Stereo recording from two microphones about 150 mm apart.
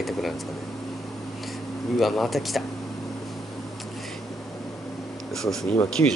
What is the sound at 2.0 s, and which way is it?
Speech, centre (ahead or behind).